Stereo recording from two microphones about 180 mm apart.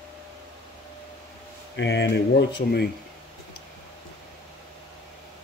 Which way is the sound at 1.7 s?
75° left (ahead or behind).